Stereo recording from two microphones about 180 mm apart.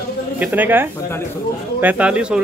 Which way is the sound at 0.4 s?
10° right (ahead or behind).